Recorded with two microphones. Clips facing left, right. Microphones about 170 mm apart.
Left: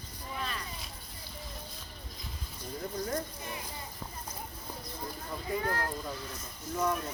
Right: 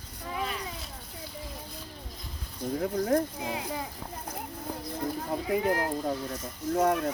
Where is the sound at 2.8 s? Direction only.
85° right.